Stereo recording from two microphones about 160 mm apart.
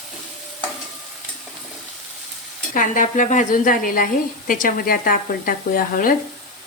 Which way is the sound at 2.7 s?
55° left (ahead or behind).